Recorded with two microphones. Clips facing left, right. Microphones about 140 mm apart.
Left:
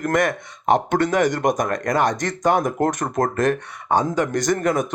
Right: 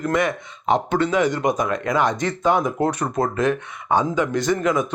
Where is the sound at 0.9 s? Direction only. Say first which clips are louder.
Left 1 dB; 60° left (ahead or behind).